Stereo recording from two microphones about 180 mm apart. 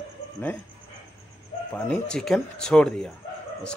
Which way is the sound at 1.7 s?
5° left (ahead or behind).